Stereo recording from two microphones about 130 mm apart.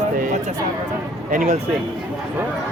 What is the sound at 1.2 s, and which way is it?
Speech, 80° right.